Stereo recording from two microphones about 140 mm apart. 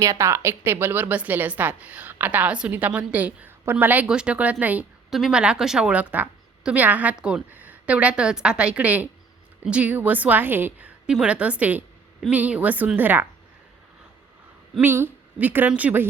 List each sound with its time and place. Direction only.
0.0 s a woman's voice: 20° right (ahead or behind)
14.8 s a woman's voice: 15° right (ahead or behind)